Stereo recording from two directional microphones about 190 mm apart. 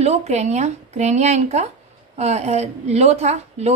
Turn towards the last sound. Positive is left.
turn(degrees=-35)  # may be behind; listen again after turning